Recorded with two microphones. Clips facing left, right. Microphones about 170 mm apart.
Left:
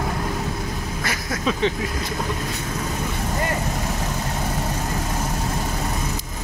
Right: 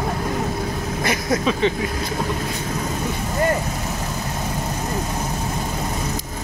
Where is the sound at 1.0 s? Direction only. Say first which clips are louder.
Right 9 dB; 20° right (ahead or behind).